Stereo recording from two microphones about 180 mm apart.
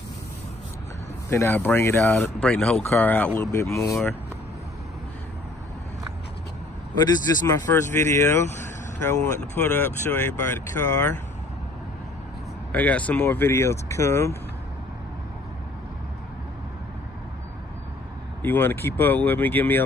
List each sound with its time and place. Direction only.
1.3 s speech: 15° left (ahead or behind)
7.0 s speech: 15° left (ahead or behind)
12.7 s speech: 10° left (ahead or behind)
18.4 s speech: 10° left (ahead or behind)